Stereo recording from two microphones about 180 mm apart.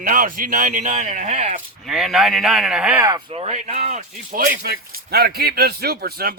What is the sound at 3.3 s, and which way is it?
Speech, 35° right (ahead or behind).